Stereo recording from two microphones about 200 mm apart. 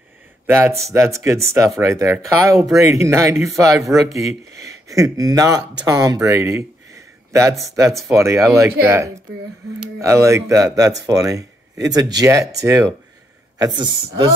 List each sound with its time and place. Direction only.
0.5 s speech: 15° right (ahead or behind)
7.6 s a man's voice: 15° right (ahead or behind)